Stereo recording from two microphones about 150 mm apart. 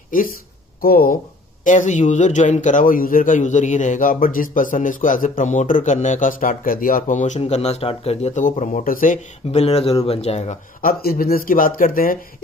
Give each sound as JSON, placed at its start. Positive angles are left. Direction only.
{"t": 0.7, "sound": "speech", "side_deg": 70}
{"t": 1.6, "sound": "a man's voice", "side_deg": 55}
{"t": 9.5, "sound": "speech", "side_deg": 45}
{"t": 10.8, "sound": "speech", "side_deg": 85}